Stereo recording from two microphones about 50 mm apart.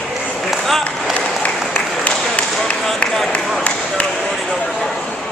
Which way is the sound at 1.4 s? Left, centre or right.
Left.